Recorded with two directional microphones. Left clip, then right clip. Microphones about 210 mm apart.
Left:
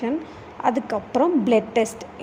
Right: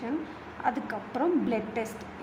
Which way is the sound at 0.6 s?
35° left (ahead or behind).